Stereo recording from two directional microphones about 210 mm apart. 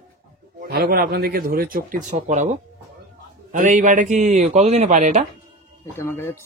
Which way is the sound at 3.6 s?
35° right (ahead or behind).